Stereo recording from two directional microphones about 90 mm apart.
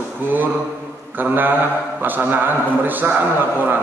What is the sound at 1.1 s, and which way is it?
A man's voice, 20° right (ahead or behind).